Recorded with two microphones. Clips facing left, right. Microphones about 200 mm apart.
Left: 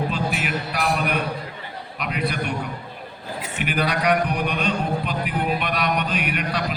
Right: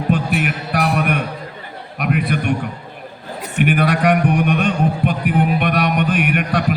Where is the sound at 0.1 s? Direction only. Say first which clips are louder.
Right 6 dB; 55° right (ahead or behind).